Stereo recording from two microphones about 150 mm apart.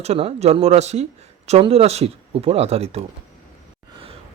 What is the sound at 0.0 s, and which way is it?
Speech, 40° right (ahead or behind).